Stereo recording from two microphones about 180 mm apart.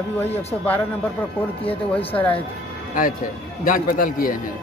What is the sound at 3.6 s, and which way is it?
Speech, 50° left (ahead or behind).